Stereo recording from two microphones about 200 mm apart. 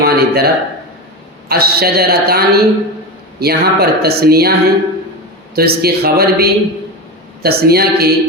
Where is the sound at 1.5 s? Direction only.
50° right (ahead or behind).